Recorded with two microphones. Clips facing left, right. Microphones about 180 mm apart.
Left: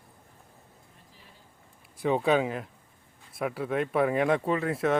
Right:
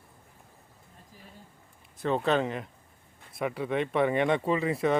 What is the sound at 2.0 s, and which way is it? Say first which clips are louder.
Speech: left 2 dB; 10° left (ahead or behind).